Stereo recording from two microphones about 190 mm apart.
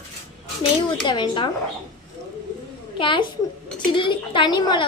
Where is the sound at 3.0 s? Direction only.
25° left (ahead or behind).